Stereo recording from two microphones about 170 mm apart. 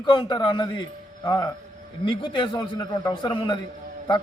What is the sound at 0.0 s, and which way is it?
A man's voice, 25° left (ahead or behind).